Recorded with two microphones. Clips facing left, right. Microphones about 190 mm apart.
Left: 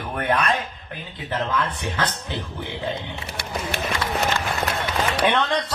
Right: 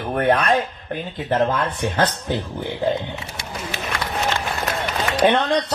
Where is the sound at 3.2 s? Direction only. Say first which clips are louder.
Left 2 dB; 60° left (ahead or behind).